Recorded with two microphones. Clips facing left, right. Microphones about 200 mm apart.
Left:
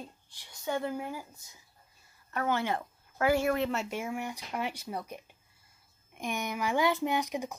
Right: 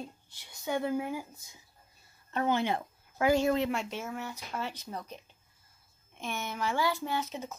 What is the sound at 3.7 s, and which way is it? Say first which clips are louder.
Speech: left 2 dB; 10° left (ahead or behind).